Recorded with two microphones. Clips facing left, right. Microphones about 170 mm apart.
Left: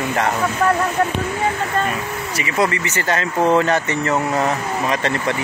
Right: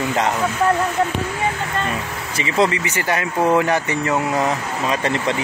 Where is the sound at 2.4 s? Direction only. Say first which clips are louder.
Right 2 dB; 25° right (ahead or behind).